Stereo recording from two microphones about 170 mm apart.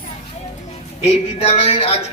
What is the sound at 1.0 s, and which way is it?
Speech, 35° left (ahead or behind).